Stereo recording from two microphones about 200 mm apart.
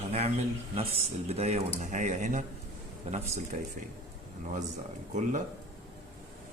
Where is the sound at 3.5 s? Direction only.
40° right (ahead or behind).